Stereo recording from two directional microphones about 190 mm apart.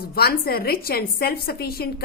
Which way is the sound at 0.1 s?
55° left (ahead or behind).